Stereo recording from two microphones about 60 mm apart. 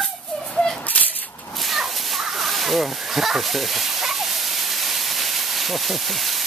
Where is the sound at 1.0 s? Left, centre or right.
Left.